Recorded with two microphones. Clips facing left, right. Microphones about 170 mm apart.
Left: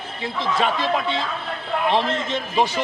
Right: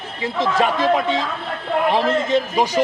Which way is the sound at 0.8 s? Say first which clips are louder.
Right 5 dB; 40° right (ahead or behind).